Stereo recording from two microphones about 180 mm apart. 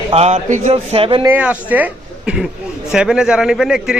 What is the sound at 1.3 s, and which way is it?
Speech, 10° right (ahead or behind).